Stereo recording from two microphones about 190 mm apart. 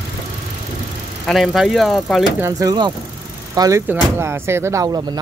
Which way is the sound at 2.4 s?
15° right (ahead or behind).